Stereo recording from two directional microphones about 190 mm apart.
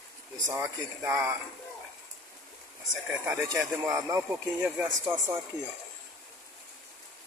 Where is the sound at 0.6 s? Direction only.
10° right (ahead or behind).